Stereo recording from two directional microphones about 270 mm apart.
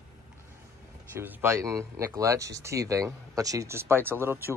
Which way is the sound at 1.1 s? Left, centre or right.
Centre.